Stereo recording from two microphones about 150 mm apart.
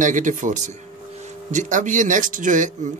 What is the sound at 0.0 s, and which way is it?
Speech, 60° right (ahead or behind).